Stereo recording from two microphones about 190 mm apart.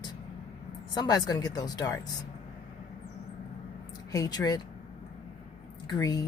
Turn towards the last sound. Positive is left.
turn(degrees=20)  # may be behind; listen again after turning